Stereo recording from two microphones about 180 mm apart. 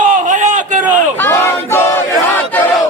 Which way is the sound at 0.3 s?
45° right (ahead or behind).